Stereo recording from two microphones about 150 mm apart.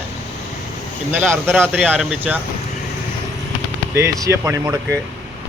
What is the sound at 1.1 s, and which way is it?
Speech, 10° right (ahead or behind).